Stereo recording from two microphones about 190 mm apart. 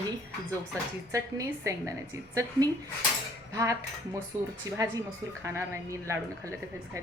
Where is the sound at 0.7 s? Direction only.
15° right (ahead or behind).